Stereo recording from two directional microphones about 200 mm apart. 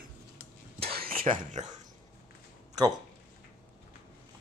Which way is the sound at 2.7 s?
20° right (ahead or behind).